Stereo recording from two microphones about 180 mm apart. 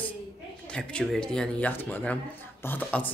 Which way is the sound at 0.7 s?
5° left (ahead or behind).